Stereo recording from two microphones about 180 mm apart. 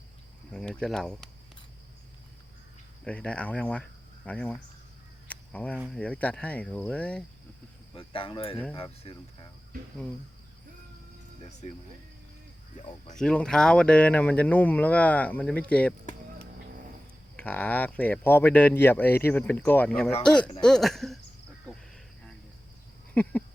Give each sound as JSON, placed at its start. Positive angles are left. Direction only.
{"t": 0.5, "sound": "speech", "side_deg": 5}
{"t": 3.0, "sound": "speech", "side_deg": 5}
{"t": 5.3, "sound": "cricket", "side_deg": 10}
{"t": 5.9, "sound": "speech", "side_deg": 5}
{"t": 7.9, "sound": "speech", "side_deg": 30}
{"t": 13.1, "sound": "speech", "side_deg": 5}
{"t": 17.3, "sound": "speech", "side_deg": 10}